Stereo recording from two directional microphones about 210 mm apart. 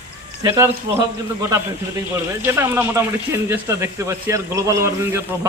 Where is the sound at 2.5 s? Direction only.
10° right (ahead or behind).